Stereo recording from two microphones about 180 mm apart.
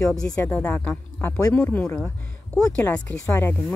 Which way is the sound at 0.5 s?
10° left (ahead or behind).